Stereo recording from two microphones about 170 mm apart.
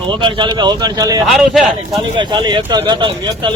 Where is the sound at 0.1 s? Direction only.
30° right (ahead or behind).